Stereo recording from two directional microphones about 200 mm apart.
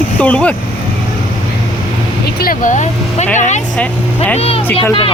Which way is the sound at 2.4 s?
40° left (ahead or behind).